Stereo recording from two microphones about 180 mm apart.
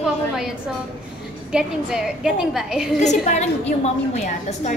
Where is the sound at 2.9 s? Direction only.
40° left (ahead or behind).